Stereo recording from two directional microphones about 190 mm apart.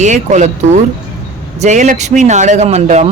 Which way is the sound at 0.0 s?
40° right (ahead or behind).